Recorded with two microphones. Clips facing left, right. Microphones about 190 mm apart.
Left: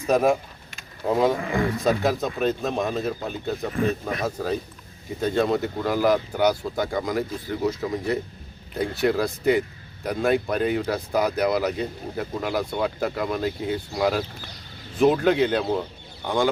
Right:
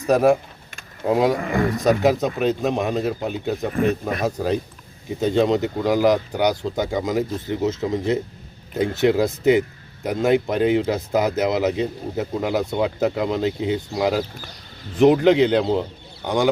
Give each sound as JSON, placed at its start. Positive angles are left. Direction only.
{"t": 0.1, "sound": "speech", "side_deg": -10}
{"t": 1.4, "sound": "speech", "side_deg": -45}
{"t": 1.8, "sound": "speech", "side_deg": -15}